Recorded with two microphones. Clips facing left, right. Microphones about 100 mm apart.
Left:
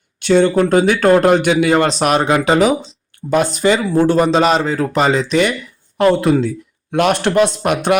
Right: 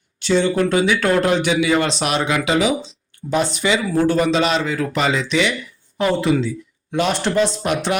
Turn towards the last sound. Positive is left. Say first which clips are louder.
# left 5 dB
turn(degrees=55)  # may be behind; listen again after turning